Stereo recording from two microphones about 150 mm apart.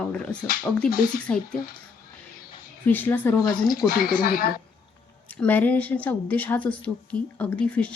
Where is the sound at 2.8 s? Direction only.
15° left (ahead or behind).